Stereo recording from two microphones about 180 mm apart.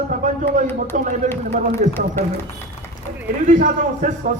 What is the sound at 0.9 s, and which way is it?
A man's voice, 45° right (ahead or behind).